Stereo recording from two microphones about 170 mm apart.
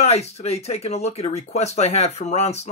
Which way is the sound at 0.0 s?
40° left (ahead or behind).